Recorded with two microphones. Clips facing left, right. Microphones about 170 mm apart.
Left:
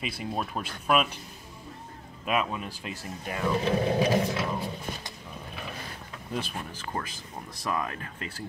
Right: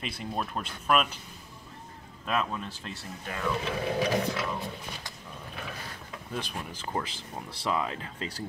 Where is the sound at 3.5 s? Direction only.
35° left (ahead or behind).